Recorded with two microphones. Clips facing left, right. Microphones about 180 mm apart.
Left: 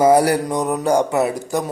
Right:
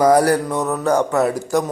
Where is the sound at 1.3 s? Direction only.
Centre (ahead or behind).